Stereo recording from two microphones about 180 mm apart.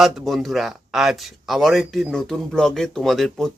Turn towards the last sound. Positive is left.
turn(degrees=0)  # may be behind; listen again after turning